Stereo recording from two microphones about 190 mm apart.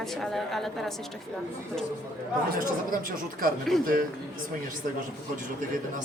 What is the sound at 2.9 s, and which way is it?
Speech, 45° right (ahead or behind).